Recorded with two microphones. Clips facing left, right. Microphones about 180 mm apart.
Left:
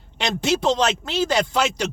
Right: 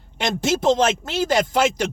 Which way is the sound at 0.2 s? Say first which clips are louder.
Even; 45° right (ahead or behind).